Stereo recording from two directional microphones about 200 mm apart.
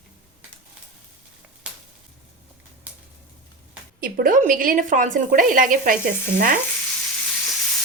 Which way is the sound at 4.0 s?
45° right (ahead or behind).